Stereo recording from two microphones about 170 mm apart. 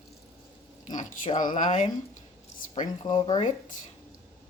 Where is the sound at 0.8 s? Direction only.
45° left (ahead or behind).